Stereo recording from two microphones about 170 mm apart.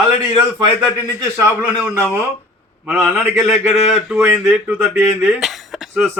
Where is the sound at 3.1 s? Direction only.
15° right (ahead or behind).